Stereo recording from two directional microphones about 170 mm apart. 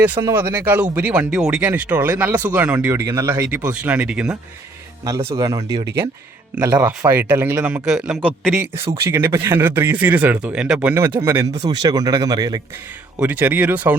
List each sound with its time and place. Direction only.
0.0 s speech: 10° right (ahead or behind)
5.3 s speech: 20° right (ahead or behind)
6.7 s a man's voice: 10° right (ahead or behind)
13.1 s speech: 10° right (ahead or behind)